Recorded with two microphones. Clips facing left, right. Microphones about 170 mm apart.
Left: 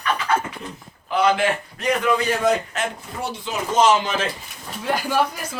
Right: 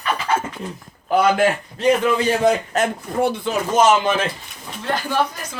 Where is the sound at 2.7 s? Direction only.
40° right (ahead or behind).